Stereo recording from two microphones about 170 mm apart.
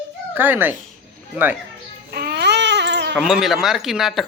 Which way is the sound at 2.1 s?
70° right (ahead or behind).